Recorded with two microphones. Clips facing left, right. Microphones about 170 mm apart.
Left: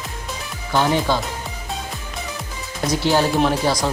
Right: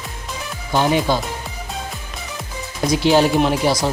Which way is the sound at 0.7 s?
15° right (ahead or behind).